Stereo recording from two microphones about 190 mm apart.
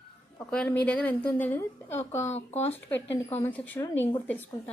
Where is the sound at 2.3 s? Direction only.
35° left (ahead or behind).